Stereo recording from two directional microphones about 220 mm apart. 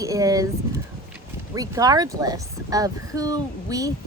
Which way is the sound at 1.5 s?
15° right (ahead or behind).